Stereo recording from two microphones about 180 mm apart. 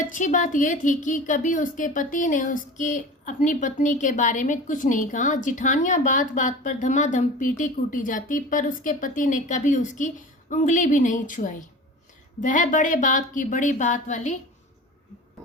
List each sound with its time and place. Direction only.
0.1 s a woman's voice: 45° left (ahead or behind)